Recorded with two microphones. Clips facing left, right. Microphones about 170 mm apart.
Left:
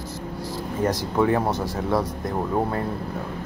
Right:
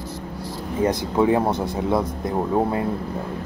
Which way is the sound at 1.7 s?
15° right (ahead or behind).